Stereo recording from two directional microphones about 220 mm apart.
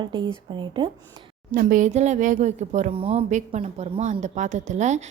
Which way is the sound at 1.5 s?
35° right (ahead or behind).